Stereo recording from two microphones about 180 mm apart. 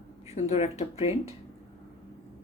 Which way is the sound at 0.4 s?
35° left (ahead or behind).